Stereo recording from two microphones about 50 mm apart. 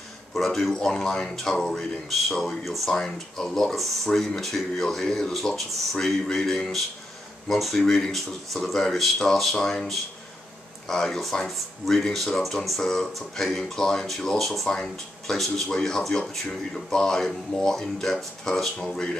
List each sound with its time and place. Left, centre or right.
0.3 s speech: centre